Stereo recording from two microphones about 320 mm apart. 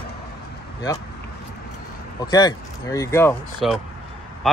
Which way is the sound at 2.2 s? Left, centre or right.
Centre.